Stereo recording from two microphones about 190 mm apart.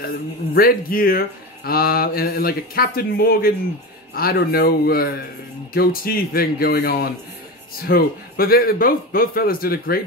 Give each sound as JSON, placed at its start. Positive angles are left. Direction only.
{"t": 0.6, "sound": "speech", "side_deg": 50}